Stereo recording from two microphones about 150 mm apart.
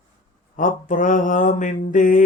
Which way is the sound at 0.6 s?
60° left (ahead or behind).